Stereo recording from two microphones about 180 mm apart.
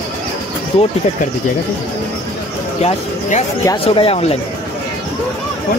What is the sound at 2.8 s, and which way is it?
Speech, 40° left (ahead or behind).